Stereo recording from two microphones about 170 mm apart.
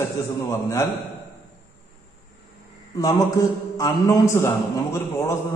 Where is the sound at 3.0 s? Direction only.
20° left (ahead or behind).